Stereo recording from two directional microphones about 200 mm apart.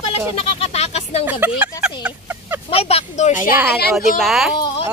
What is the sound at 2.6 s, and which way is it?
Speech, 30° left (ahead or behind).